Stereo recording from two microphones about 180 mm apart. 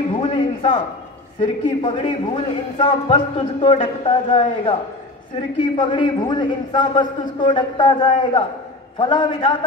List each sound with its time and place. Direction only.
0.2 s a sound: 30° left (ahead or behind)
1.4 s a man's voice: 30° left (ahead or behind)
5.8 s a man's voice: 25° left (ahead or behind)